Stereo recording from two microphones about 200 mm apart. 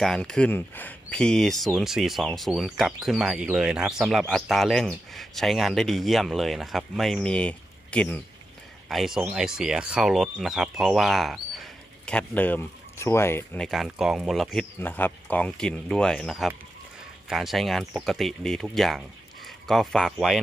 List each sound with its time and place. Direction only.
0.0 s speech: 5° left (ahead or behind)
13.7 s speech: centre (ahead or behind)